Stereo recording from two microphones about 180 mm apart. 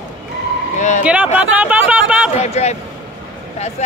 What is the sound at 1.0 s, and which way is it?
Speech, 10° right (ahead or behind).